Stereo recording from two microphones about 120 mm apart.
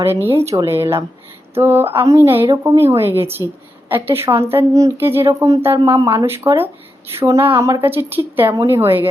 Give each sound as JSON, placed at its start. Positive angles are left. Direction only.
{"t": 0.3, "sound": "a woman's voice", "side_deg": -20}